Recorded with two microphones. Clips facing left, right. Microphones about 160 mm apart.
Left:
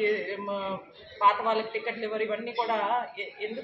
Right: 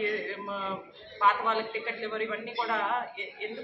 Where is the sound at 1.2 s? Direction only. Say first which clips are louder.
Left 2 dB; 25° left (ahead or behind).